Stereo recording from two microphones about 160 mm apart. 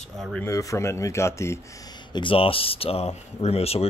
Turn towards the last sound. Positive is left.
turn(degrees=40)  # may be behind; listen again after turning